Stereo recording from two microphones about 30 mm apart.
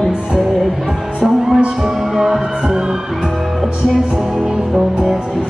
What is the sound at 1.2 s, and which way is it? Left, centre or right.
Music, centre.